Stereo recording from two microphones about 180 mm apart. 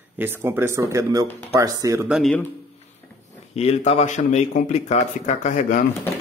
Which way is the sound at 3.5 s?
35° left (ahead or behind).